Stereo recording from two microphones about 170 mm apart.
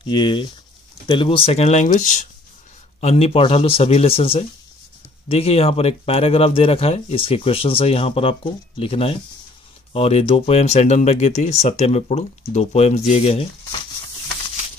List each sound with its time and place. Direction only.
0.0 s speech: 30° left (ahead or behind)